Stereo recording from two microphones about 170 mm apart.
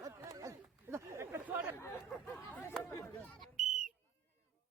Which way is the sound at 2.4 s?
10° left (ahead or behind).